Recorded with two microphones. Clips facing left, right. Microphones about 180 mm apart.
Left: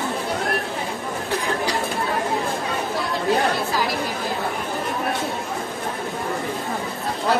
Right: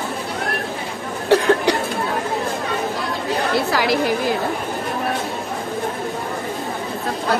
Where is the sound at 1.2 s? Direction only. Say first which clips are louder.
Right 11 dB; 75° right (ahead or behind).